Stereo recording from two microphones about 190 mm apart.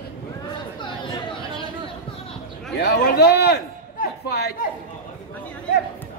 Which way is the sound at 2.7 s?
65° left (ahead or behind).